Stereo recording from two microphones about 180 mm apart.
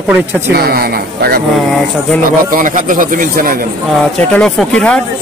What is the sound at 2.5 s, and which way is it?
A man's voice, 45° right (ahead or behind).